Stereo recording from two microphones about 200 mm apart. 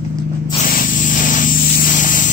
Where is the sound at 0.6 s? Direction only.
40° left (ahead or behind).